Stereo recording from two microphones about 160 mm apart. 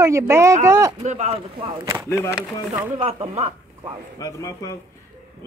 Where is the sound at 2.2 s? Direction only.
15° left (ahead or behind).